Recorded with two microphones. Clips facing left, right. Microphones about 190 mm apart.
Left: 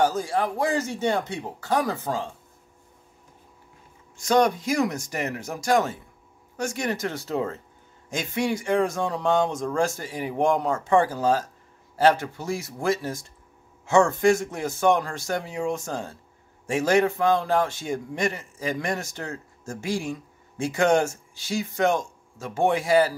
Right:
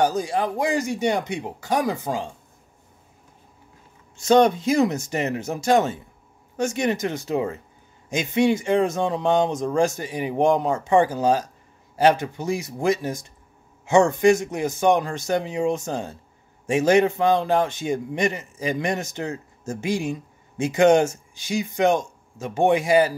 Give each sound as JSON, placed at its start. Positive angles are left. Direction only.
{"t": 0.0, "sound": "speech", "side_deg": -15}
{"t": 4.2, "sound": "a man's voice", "side_deg": -25}